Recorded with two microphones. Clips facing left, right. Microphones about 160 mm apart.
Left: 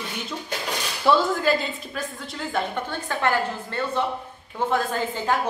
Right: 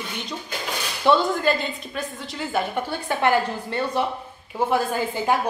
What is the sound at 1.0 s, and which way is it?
A woman's voice, centre (ahead or behind).